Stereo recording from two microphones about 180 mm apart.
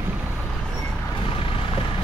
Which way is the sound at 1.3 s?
30° left (ahead or behind).